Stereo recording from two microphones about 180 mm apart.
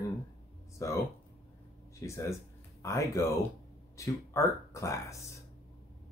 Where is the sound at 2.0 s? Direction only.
15° left (ahead or behind).